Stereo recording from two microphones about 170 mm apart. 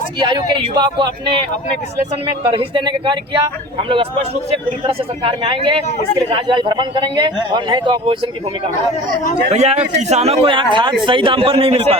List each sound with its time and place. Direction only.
0.2 s speech: 25° right (ahead or behind)
2.5 s a man's voice: 30° right (ahead or behind)
9.5 s a man's voice: 40° right (ahead or behind)